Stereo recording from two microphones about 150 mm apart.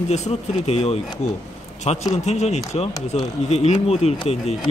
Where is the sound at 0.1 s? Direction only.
45° left (ahead or behind).